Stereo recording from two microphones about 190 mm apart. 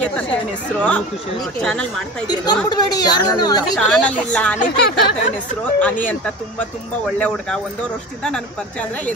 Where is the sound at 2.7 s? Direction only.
20° left (ahead or behind).